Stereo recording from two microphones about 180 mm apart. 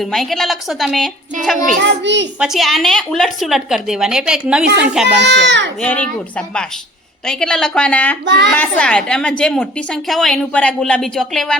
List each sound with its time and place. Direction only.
0.0 s a woman's voice: centre (ahead or behind)
1.8 s a child's voice: 80° right
2.4 s a woman's voice: centre (ahead or behind)
5.0 s a child's voice: 75° right (ahead or behind)
5.8 s a woman's voice: 5° left (ahead or behind)
8.2 s a child's voice: 75° right (ahead or behind)
8.4 s a woman's voice: 5° left (ahead or behind)